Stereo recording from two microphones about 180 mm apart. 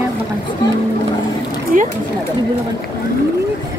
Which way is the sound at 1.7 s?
50° right (ahead or behind).